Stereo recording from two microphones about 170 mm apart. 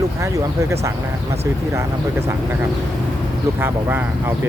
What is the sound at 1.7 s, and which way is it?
Speech, 15° right (ahead or behind).